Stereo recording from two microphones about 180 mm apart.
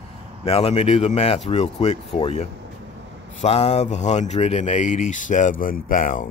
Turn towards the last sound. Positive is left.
turn(degrees=45)  # may be behind; listen again after turning